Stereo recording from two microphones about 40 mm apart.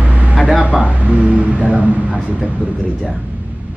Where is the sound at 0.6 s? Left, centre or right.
Right.